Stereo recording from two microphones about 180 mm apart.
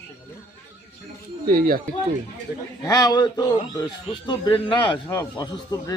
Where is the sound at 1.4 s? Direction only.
55° right (ahead or behind).